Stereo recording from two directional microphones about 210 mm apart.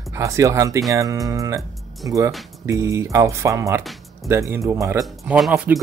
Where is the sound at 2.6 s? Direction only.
15° right (ahead or behind).